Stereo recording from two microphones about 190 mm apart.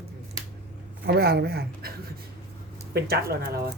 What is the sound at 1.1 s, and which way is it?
Speech, 55° right (ahead or behind).